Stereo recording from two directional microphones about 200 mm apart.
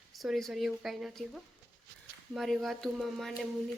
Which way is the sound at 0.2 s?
Centre (ahead or behind).